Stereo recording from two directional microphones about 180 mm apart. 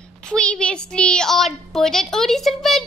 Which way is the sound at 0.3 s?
5° left (ahead or behind).